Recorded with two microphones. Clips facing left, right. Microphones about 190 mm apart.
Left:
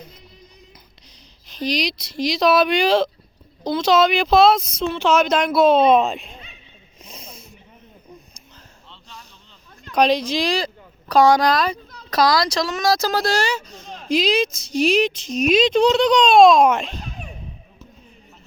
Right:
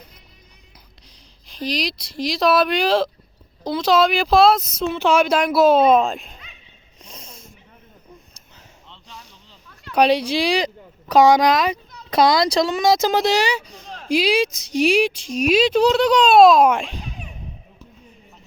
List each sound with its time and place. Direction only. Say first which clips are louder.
1.5 s speech: left 2 dB; centre (ahead or behind)
7.0 s a sound: left 1 dB; 5° left (ahead or behind)
9.9 s speech: right 1 dB; 10° right (ahead or behind)